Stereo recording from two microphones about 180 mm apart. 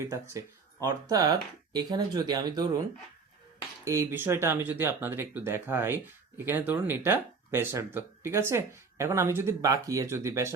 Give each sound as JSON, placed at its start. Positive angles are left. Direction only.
{"t": 0.0, "sound": "speech", "side_deg": -15}
{"t": 3.8, "sound": "speech", "side_deg": -15}